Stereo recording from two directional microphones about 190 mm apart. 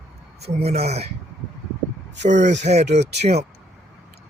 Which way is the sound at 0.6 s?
35° right (ahead or behind).